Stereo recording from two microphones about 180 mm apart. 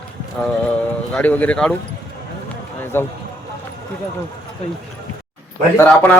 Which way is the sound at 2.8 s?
10° left (ahead or behind).